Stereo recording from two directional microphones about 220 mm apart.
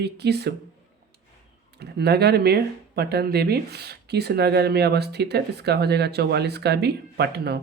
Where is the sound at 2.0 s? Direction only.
50° right (ahead or behind).